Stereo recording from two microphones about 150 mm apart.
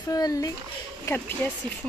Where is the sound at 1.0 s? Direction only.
15° left (ahead or behind).